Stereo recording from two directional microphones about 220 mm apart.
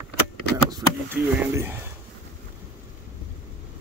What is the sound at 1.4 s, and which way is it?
Speech, 10° right (ahead or behind).